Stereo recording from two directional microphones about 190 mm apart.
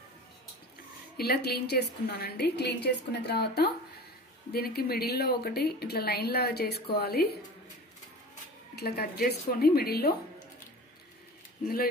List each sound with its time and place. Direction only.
1.1 s a woman's voice: 55° left (ahead or behind)
8.7 s a woman's voice: 55° left (ahead or behind)
11.6 s speech: 50° left (ahead or behind)